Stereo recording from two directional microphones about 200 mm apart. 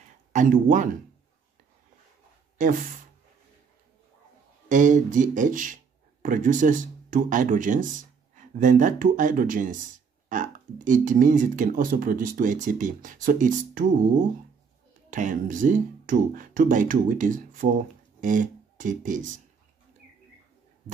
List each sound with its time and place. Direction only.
0.3 s speech: 40° right (ahead or behind)
4.6 s speech: 40° right (ahead or behind)